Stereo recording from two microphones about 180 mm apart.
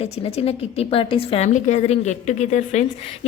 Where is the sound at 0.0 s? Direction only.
35° left (ahead or behind).